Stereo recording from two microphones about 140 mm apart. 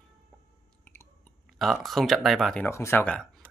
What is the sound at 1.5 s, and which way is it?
Speech, centre (ahead or behind).